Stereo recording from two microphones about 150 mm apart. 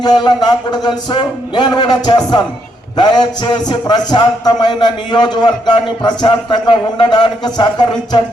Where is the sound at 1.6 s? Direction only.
30° left (ahead or behind).